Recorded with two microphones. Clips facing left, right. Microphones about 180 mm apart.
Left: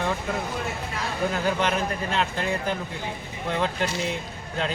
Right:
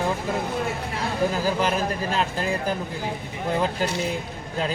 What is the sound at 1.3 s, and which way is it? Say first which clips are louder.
Speech: right 1 dB; 5° right (ahead or behind).